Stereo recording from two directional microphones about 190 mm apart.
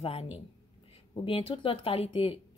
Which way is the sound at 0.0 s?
30° left (ahead or behind).